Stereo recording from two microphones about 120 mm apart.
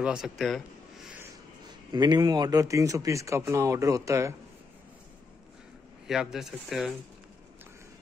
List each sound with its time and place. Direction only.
0.0 s speech: 5° right (ahead or behind)
1.9 s speech: 35° right (ahead or behind)
6.0 s speech: centre (ahead or behind)